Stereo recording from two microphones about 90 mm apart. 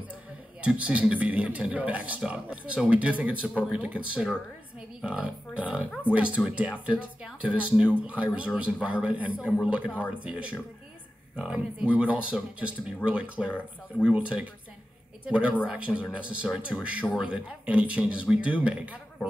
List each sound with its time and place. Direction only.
0.1 s a man's voice: 15° right (ahead or behind)